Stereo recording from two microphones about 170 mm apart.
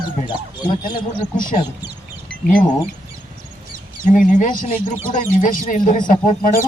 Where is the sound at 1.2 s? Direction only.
55° left (ahead or behind).